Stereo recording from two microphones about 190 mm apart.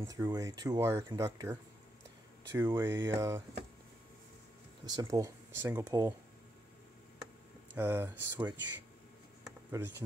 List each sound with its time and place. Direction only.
0.0 s speech: 15° right (ahead or behind)
4.8 s speech: 20° right (ahead or behind)
7.7 s speech: 10° right (ahead or behind)
9.7 s speech: 15° right (ahead or behind)